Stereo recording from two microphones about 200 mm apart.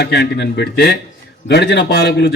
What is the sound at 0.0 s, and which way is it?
A man's voice, 60° left (ahead or behind).